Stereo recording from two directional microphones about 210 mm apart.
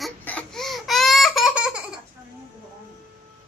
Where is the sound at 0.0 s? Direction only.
5° left (ahead or behind).